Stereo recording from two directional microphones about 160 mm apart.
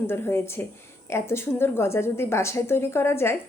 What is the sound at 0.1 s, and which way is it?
A woman's voice, 15° left (ahead or behind).